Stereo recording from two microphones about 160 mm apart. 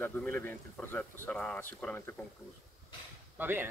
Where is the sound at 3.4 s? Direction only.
10° right (ahead or behind).